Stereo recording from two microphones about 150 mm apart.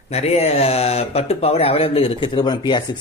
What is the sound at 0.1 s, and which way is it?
Speech, 45° left (ahead or behind).